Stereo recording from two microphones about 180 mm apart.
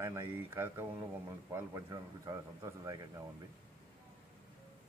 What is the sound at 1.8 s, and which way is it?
Speech, 20° right (ahead or behind).